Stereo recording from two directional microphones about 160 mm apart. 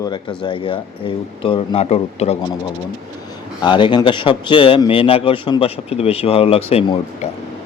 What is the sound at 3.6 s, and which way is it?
Speech, 30° left (ahead or behind).